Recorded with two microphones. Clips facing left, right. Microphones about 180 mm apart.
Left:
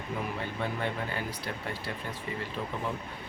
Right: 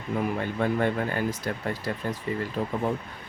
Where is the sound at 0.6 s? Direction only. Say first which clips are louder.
Right 9 dB; 50° right (ahead or behind).